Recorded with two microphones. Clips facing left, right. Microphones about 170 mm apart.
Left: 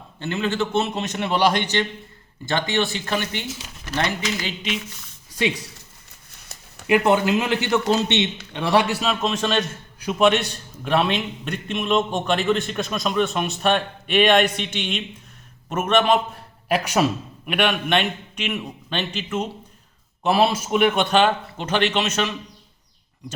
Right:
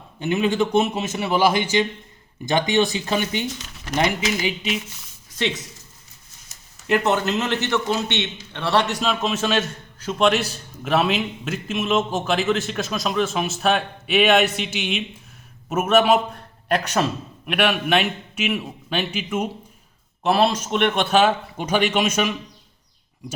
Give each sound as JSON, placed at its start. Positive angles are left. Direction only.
{"t": 0.2, "sound": "a man's voice", "side_deg": -15}
{"t": 5.4, "sound": "speech", "side_deg": 10}
{"t": 6.3, "sound": "a sound", "side_deg": 65}
{"t": 6.8, "sound": "a man's voice", "side_deg": 10}
{"t": 16.3, "sound": "a man's voice", "side_deg": 5}
{"t": 20.2, "sound": "a man's voice", "side_deg": 0}